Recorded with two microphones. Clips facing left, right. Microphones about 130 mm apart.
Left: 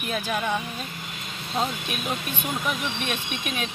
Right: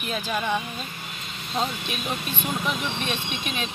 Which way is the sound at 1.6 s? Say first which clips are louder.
Even; 10° left (ahead or behind).